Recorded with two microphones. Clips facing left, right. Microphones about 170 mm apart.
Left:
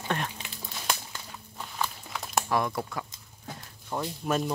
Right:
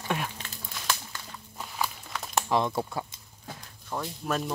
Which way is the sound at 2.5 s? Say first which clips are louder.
Right 3 dB; 25° right (ahead or behind).